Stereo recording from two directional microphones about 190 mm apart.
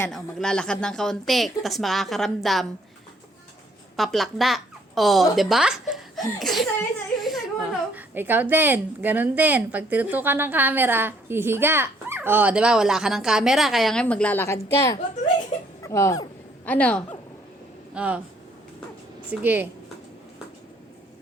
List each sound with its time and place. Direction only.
0.1 s a woman's voice: centre (ahead or behind)
3.9 s a woman's voice: centre (ahead or behind)
17.9 s speech: 5° right (ahead or behind)
19.3 s a woman's voice: 10° right (ahead or behind)